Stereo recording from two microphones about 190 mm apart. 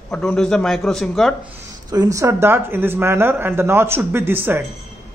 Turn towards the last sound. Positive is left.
turn(degrees=-10)  # may be behind; listen again after turning